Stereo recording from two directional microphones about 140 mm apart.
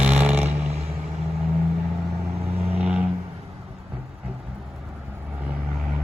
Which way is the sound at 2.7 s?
10° right (ahead or behind).